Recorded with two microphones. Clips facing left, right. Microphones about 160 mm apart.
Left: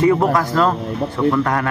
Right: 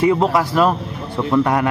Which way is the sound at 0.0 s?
15° right (ahead or behind).